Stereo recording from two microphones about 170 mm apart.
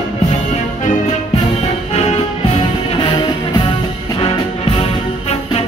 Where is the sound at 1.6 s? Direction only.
40° left (ahead or behind).